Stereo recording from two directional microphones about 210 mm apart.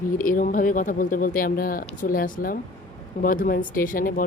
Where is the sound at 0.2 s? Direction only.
40° left (ahead or behind).